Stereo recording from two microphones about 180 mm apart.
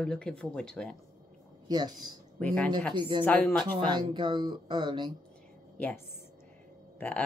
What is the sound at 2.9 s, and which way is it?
Speech, 25° right (ahead or behind).